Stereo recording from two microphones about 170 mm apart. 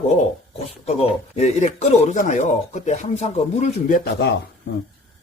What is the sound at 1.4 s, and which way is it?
Speech, 40° left (ahead or behind).